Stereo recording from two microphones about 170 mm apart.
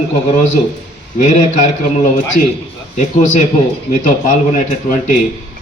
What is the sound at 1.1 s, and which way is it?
A man's voice, 45° left (ahead or behind).